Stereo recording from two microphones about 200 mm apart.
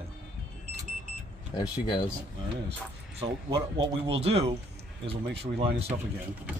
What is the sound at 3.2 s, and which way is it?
Speech, 25° right (ahead or behind).